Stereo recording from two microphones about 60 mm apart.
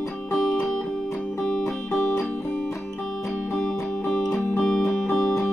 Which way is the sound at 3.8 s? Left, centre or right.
Left.